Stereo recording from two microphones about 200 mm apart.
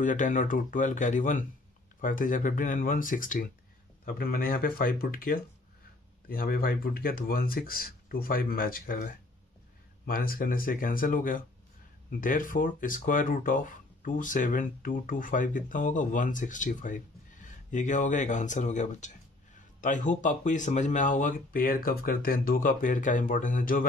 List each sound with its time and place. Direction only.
0.0 s speech: 40° left (ahead or behind)